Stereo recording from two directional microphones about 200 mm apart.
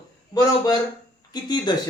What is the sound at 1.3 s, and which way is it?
Speech, 20° left (ahead or behind).